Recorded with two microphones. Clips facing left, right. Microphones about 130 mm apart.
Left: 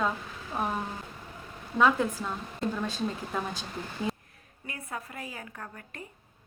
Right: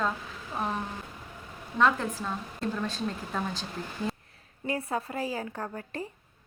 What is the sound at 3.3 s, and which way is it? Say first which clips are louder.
Speech: right 2 dB; 5° left (ahead or behind).